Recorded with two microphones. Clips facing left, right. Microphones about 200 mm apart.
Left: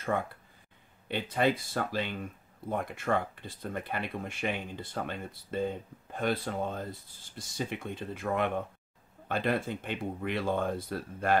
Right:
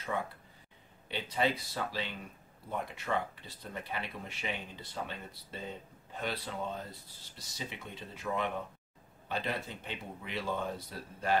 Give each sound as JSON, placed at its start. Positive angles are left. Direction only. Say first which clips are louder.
{"t": 0.1, "sound": "speech", "louder": "left 4 dB", "side_deg": 55}